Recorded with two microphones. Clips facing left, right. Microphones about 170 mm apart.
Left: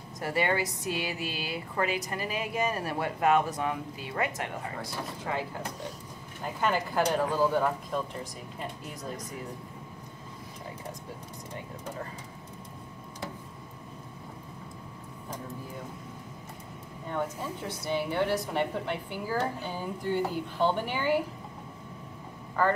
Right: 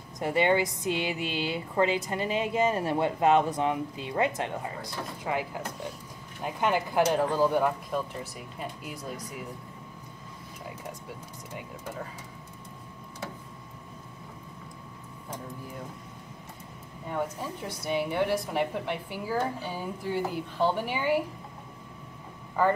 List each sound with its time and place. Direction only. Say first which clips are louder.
0.2 s speech: right 4 dB; 20° right (ahead or behind)
17.1 s speech: right 1 dB; 10° right (ahead or behind)